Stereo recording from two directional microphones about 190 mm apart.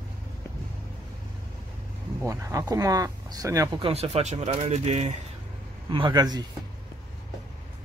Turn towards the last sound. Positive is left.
turn(degrees=-20)  # may be behind; listen again after turning